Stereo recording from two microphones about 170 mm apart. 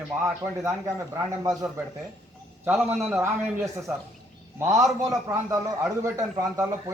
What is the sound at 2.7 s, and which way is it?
A man's voice, 15° right (ahead or behind).